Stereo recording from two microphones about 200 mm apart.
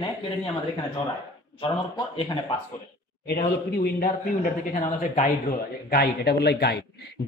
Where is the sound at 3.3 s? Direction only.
50° left (ahead or behind).